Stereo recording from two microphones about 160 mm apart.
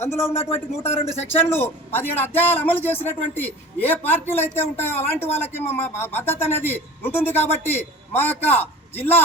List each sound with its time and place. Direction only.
0.0 s a man's voice: 15° left (ahead or behind)
0.9 s speech: 40° left (ahead or behind)
1.4 s a man's voice: 15° left (ahead or behind)